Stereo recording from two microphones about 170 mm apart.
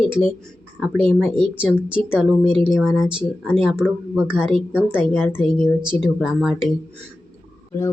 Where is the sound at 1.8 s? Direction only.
5° right (ahead or behind).